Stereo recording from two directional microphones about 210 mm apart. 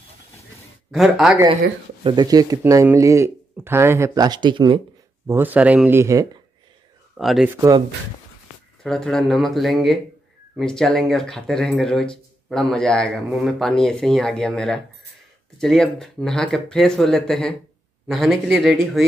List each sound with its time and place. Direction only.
0.9 s speech: centre (ahead or behind)
2.0 s speech: 20° right (ahead or behind)
5.2 s speech: 10° right (ahead or behind)
7.2 s speech: centre (ahead or behind)
8.8 s speech: centre (ahead or behind)